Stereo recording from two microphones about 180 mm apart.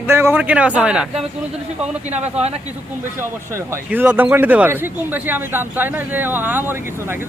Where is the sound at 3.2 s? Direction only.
15° right (ahead or behind).